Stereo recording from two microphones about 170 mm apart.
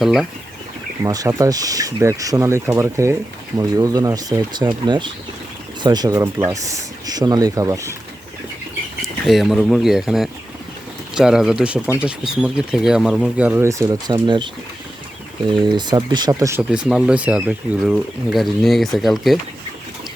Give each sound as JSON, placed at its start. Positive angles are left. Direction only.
{"t": 0.0, "sound": "speech", "side_deg": 0}
{"t": 1.0, "sound": "speech", "side_deg": -20}
{"t": 9.0, "sound": "speech", "side_deg": 0}
{"t": 15.6, "sound": "speech", "side_deg": -25}
{"t": 16.6, "sound": "speech", "side_deg": -5}